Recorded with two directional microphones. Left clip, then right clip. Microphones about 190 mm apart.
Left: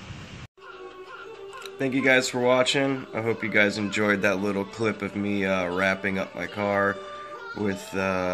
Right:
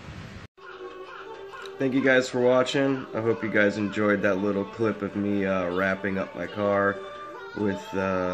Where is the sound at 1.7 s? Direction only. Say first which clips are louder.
Even; 5° left (ahead or behind).